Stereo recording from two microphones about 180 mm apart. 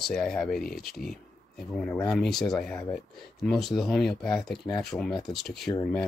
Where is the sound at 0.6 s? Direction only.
55° left (ahead or behind).